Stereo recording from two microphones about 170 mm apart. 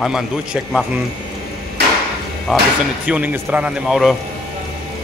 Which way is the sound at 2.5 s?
Centre (ahead or behind).